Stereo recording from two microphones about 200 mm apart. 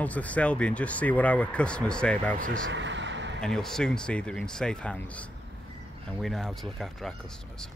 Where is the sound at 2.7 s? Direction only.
65° right (ahead or behind).